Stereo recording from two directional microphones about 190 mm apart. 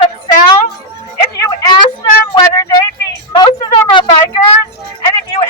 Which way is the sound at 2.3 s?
20° left (ahead or behind).